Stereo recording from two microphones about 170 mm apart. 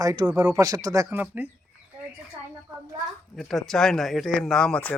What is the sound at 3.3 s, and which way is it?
Speech, centre (ahead or behind).